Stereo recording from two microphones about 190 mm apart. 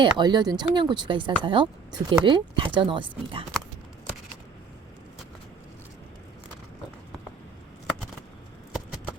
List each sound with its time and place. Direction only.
0.0 s speech: 20° right (ahead or behind)